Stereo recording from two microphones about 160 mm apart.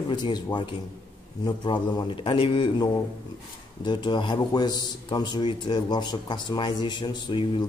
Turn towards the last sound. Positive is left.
turn(degrees=30)  # may be behind; listen again after turning